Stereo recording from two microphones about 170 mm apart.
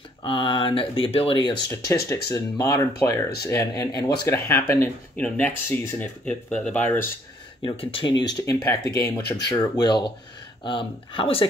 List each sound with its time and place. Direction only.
0.2 s speech: 30° left (ahead or behind)
2.2 s speech: 20° left (ahead or behind)
7.6 s speech: 30° left (ahead or behind)